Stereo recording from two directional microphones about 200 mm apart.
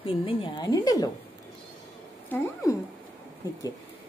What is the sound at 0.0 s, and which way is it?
Speech, 25° left (ahead or behind).